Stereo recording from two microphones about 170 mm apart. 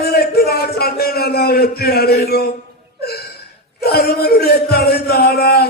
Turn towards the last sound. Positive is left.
turn(degrees=65)  # may be behind; listen again after turning